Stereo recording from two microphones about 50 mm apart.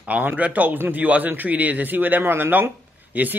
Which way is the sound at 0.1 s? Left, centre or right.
Right.